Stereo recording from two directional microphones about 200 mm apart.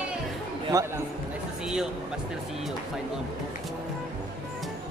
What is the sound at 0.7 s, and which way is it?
Speech, 15° right (ahead or behind).